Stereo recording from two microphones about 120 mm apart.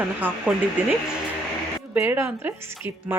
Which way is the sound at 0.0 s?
10° right (ahead or behind).